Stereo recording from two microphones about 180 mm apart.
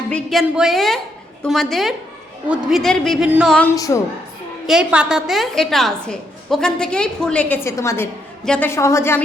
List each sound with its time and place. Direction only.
0.1 s a woman's voice: centre (ahead or behind)
3.2 s music: 5° right (ahead or behind)
3.8 s a woman's voice: 20° left (ahead or behind)
4.6 s a woman's voice: 5° right (ahead or behind); by 9.2 s 15° left (ahead or behind)